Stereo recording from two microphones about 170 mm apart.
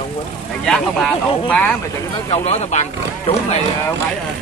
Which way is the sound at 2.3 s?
40° left (ahead or behind).